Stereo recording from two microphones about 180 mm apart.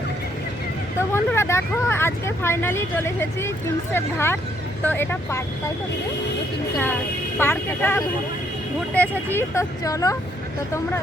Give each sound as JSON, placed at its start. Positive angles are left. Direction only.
{"t": 0.9, "sound": "speech", "side_deg": 15}
{"t": 7.3, "sound": "speech", "side_deg": 10}